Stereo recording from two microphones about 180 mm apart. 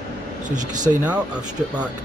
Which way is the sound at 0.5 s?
45° right (ahead or behind).